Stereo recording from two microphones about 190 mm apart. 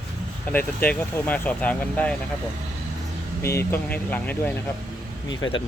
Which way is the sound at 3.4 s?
15° left (ahead or behind).